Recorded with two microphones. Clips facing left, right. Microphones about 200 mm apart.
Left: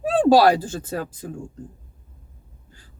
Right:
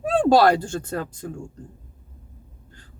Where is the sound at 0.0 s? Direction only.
5° left (ahead or behind).